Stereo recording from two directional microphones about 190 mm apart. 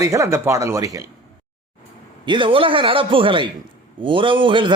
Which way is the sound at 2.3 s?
25° right (ahead or behind).